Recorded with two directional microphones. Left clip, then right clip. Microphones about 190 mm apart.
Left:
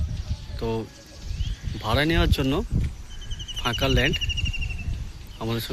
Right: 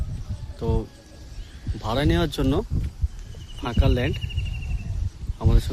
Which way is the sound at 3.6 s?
5° right (ahead or behind).